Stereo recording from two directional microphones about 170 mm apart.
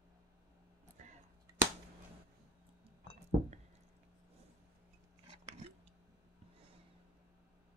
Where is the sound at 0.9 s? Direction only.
45° right (ahead or behind).